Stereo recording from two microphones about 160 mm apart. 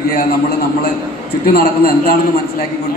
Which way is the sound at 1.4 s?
70° left (ahead or behind).